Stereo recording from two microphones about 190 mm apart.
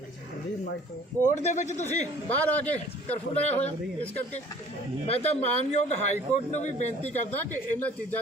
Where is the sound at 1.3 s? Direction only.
40° left (ahead or behind).